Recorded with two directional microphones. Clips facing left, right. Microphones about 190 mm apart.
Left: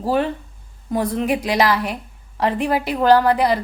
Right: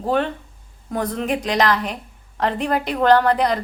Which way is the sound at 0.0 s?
5° left (ahead or behind).